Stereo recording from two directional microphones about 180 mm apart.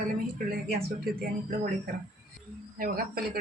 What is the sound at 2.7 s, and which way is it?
Speech, 50° right (ahead or behind).